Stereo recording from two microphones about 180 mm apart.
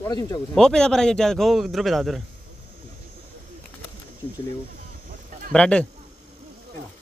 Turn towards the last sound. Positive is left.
turn(degrees=5)  # may be behind; listen again after turning